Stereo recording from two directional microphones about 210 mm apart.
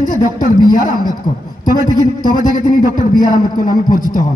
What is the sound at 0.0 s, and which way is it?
Speech, 40° left (ahead or behind).